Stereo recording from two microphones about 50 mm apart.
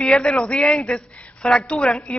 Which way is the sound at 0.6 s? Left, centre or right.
Centre.